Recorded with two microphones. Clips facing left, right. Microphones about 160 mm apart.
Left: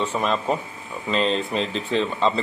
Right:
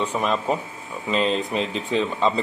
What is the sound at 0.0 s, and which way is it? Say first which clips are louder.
A man's voice: even; 10° right (ahead or behind).